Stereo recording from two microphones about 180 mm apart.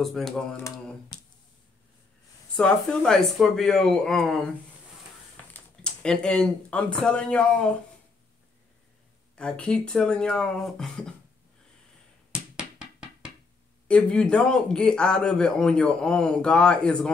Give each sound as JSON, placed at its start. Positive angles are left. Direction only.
{"t": 0.0, "sound": "speech", "side_deg": 0}
{"t": 1.1, "sound": "a sound", "side_deg": 25}
{"t": 2.5, "sound": "speech", "side_deg": 5}
{"t": 5.5, "sound": "speech", "side_deg": 5}
{"t": 9.3, "sound": "speech", "side_deg": 5}
{"t": 12.5, "sound": "a sound", "side_deg": -5}
{"t": 13.8, "sound": "speech", "side_deg": 5}